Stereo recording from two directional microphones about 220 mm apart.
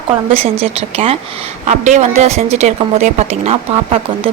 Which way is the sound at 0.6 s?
30° right (ahead or behind).